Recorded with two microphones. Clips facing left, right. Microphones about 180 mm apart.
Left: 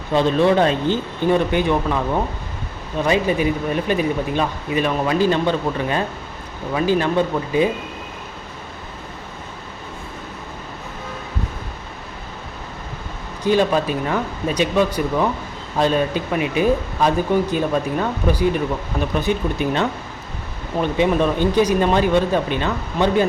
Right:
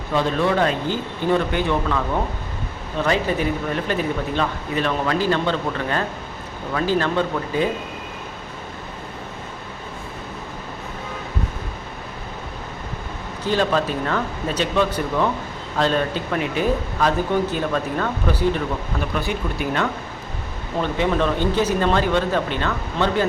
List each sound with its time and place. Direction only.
0.1 s speech: 20° left (ahead or behind)
3.0 s speech: 15° left (ahead or behind)
13.4 s speech: 15° left (ahead or behind)